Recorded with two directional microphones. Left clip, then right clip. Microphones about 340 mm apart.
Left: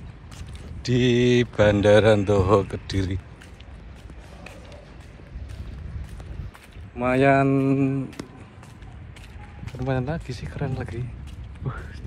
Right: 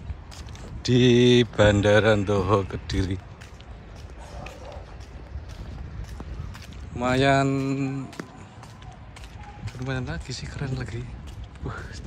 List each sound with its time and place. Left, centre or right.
0.8 s speech: centre
7.0 s speech: centre
9.8 s speech: centre
11.6 s speech: centre